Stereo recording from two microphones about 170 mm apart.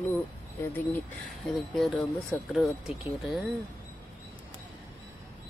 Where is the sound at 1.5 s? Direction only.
Centre (ahead or behind).